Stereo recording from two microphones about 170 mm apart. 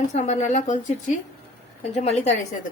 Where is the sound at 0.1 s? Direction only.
40° left (ahead or behind).